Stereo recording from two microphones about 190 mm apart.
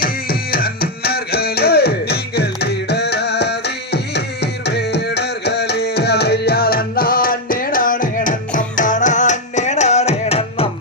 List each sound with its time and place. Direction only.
0.0 s music: 50° left (ahead or behind); by 10.7 s 30° left (ahead or behind)